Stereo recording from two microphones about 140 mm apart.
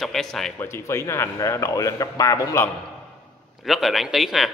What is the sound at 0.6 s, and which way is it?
Speech, 20° left (ahead or behind).